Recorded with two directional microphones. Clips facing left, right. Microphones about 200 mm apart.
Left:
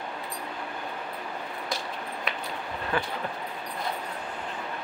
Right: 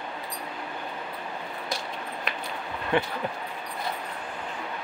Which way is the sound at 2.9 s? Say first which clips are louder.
Right 5 dB; 25° right (ahead or behind).